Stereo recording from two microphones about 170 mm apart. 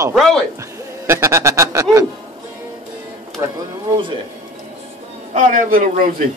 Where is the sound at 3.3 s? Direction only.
25° right (ahead or behind).